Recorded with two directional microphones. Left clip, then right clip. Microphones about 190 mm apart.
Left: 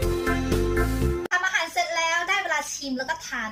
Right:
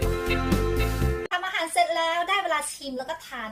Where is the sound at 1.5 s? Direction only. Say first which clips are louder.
Right 1 dB; 20° right (ahead or behind).